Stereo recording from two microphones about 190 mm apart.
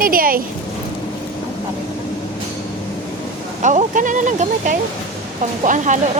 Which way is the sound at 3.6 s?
40° right (ahead or behind).